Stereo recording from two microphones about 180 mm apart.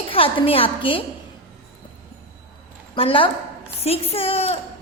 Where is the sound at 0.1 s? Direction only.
30° left (ahead or behind).